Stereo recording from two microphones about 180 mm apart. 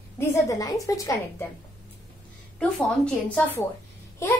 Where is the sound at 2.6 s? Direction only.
5° left (ahead or behind).